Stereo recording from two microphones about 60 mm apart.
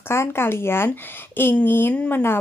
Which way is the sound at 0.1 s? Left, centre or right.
Left.